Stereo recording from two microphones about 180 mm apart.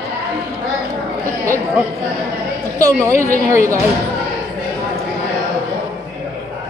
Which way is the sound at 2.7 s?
15° right (ahead or behind).